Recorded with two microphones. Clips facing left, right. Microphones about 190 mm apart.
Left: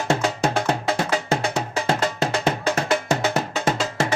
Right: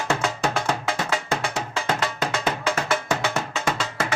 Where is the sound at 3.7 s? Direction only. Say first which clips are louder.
Left 4 dB; 25° left (ahead or behind).